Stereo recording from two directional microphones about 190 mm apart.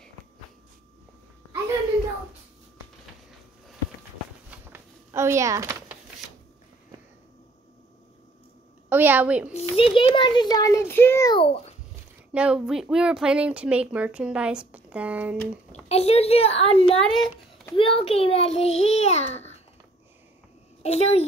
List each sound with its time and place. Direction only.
4.5 s a sound: 10° right (ahead or behind)
8.8 s a woman's voice: 10° right (ahead or behind)
9.5 s a child's voice: 35° left (ahead or behind); by 11.3 s 15° left (ahead or behind)
11.3 s a child's voice: 30° left (ahead or behind)
12.3 s speech: 5° right (ahead or behind)
15.9 s a child's voice: 30° left (ahead or behind)
20.8 s a child's voice: 35° left (ahead or behind)